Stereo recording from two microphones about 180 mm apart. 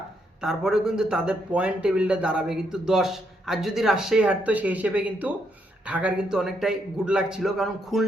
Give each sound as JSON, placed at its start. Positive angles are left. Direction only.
{"t": 0.4, "sound": "speech", "side_deg": -5}